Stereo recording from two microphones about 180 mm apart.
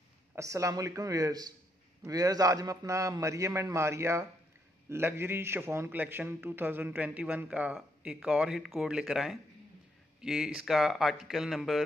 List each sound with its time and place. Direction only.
0.4 s a man's voice: 15° right (ahead or behind); by 11.8 s centre (ahead or behind)